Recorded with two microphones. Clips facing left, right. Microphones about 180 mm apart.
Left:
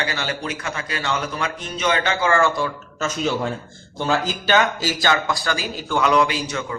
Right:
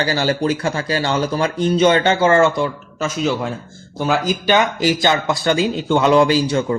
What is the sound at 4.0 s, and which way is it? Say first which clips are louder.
Speech: right 4 dB; 15° right (ahead or behind).